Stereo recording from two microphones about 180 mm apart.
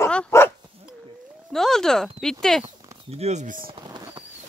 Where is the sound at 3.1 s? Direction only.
40° right (ahead or behind).